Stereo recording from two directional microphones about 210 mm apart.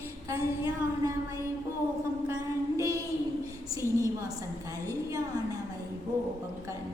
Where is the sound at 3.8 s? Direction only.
15° right (ahead or behind).